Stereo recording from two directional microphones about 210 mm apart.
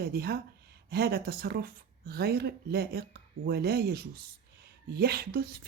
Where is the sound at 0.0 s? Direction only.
50° right (ahead or behind).